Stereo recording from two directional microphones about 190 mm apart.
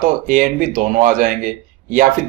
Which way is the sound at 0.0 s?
45° right (ahead or behind).